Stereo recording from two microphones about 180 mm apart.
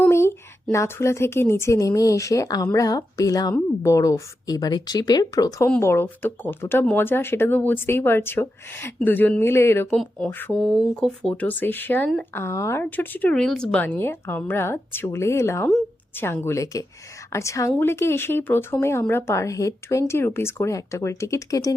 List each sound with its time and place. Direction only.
0.0 s a woman's voice: 15° left (ahead or behind)
9.9 s speech: 5° left (ahead or behind)